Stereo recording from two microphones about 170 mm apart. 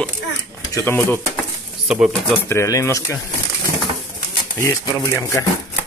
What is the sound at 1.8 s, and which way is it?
Speech, 5° right (ahead or behind).